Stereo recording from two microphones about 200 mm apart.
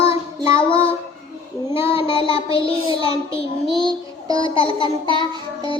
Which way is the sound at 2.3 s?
25° left (ahead or behind).